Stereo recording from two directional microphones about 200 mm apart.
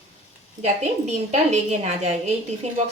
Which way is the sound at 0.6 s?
35° right (ahead or behind).